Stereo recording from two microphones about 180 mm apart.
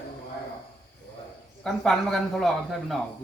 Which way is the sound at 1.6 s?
Centre (ahead or behind).